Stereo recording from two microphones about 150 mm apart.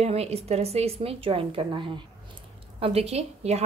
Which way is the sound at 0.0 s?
45° right (ahead or behind).